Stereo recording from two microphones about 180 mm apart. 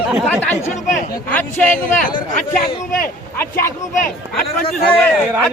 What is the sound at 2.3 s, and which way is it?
Speech, 50° left (ahead or behind).